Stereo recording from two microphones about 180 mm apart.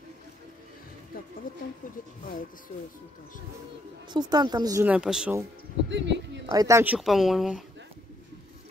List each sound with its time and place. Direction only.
1.1 s speech: 55° left (ahead or behind)
4.1 s speech: 25° right (ahead or behind)
4.8 s speech: 5° right (ahead or behind)
5.9 s speech: 80° right
6.5 s speech: 20° right (ahead or behind); by 7.6 s centre (ahead or behind)